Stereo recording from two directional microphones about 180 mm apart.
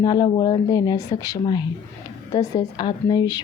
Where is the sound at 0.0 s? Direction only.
25° left (ahead or behind).